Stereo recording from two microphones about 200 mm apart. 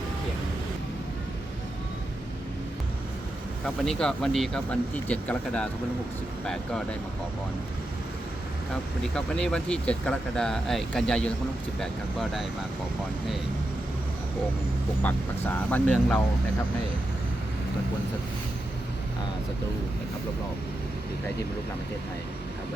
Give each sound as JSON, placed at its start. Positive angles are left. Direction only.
{"t": 3.8, "sound": "speech", "side_deg": 5}
{"t": 9.1, "sound": "speech", "side_deg": 5}
{"t": 15.0, "sound": "speech", "side_deg": 10}